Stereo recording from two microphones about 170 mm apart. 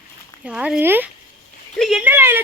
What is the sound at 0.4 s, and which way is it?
Speech, 5° right (ahead or behind).